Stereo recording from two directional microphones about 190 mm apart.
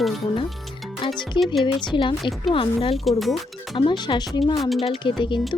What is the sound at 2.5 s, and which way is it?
Speech, 30° left (ahead or behind).